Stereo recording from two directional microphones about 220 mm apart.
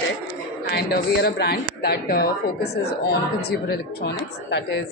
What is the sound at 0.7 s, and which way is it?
A woman's voice, 45° left (ahead or behind).